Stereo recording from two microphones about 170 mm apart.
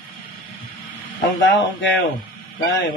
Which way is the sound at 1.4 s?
90° left.